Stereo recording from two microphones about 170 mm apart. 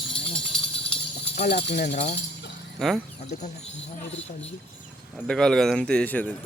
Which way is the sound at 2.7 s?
Centre (ahead or behind).